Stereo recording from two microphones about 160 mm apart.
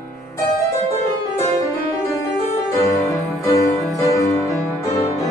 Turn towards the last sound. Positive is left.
turn(degrees=20)  # may be behind; listen again after turning